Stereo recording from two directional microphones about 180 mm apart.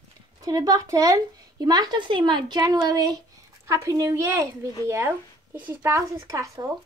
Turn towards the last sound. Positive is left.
turn(degrees=-20)  # may be behind; listen again after turning